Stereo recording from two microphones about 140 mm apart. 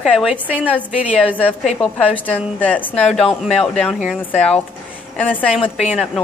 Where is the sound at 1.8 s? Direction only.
10° left (ahead or behind).